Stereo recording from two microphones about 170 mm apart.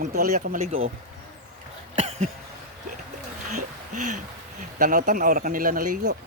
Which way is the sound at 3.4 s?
45° right (ahead or behind).